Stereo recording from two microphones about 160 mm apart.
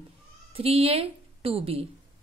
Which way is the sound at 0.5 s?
35° right (ahead or behind).